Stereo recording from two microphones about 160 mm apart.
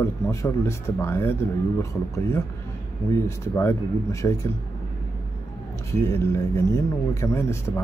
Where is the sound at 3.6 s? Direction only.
15° left (ahead or behind).